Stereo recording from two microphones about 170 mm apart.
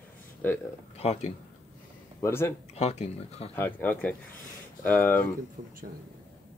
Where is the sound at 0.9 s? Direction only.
40° left (ahead or behind).